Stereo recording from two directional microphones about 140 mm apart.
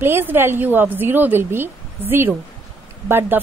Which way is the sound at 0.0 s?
15° right (ahead or behind).